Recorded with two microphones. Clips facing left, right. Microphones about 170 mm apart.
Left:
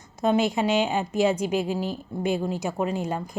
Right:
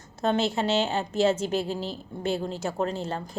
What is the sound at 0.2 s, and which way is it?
Speech, 10° left (ahead or behind).